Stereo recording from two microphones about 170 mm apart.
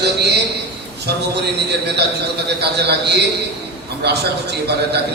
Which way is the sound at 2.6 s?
80° right.